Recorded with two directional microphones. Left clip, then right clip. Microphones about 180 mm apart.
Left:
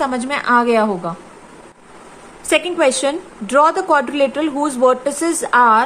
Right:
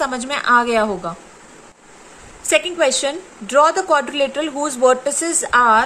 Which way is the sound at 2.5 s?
5° left (ahead or behind).